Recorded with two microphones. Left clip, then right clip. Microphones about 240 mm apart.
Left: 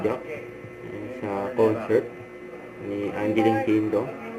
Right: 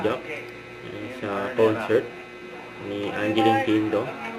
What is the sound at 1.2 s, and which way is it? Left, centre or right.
Speech, right.